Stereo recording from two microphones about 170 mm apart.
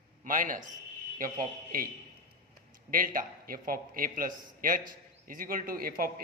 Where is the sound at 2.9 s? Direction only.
55° right (ahead or behind).